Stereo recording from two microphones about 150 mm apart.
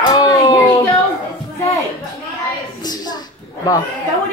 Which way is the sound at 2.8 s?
25° left (ahead or behind).